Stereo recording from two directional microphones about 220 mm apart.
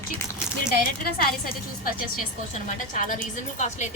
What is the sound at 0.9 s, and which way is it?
A woman's voice, 40° left (ahead or behind).